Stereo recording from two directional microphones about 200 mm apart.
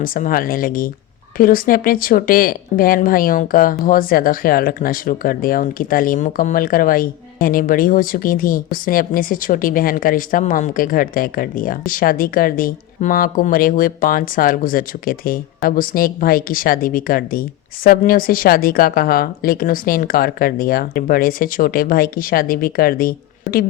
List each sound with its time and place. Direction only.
0.0 s speech: 45° left (ahead or behind)